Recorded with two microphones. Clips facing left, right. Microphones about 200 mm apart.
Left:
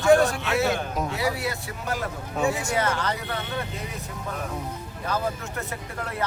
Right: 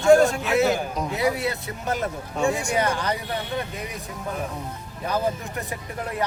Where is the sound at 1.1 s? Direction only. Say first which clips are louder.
Right 7 dB; 20° right (ahead or behind).